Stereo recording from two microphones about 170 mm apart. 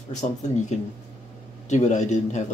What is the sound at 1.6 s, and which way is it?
Speech, 45° left (ahead or behind).